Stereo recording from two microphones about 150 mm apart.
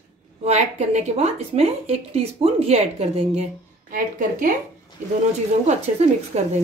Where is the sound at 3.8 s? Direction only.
65° right (ahead or behind).